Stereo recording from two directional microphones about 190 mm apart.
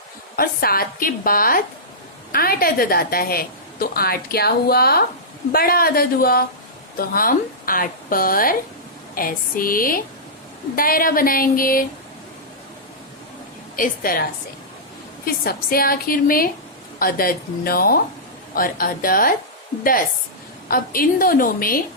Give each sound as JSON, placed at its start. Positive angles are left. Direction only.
{"t": 0.3, "sound": "a woman's voice", "side_deg": 50}
{"t": 13.7, "sound": "a woman's voice", "side_deg": 50}
{"t": 20.7, "sound": "a woman's voice", "side_deg": 50}